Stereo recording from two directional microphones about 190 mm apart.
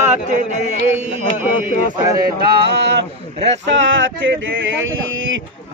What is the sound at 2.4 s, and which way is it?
Speech, 60° right (ahead or behind).